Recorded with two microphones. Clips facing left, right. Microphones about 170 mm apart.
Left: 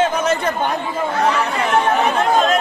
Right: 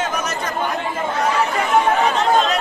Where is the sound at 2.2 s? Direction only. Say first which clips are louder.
Left 1 dB; 50° left (ahead or behind).